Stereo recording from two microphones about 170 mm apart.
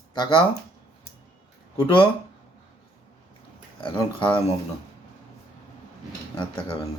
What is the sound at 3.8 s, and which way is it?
Speech, 30° left (ahead or behind).